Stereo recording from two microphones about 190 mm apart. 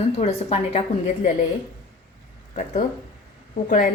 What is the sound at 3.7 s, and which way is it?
Speech, 50° left (ahead or behind).